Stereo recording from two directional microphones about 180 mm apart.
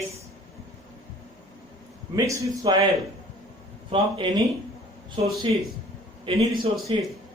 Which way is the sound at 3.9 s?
25° right (ahead or behind).